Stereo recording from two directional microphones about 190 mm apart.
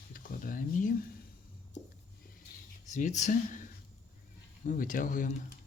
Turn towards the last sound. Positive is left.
turn(degrees=45)  # may be behind; listen again after turning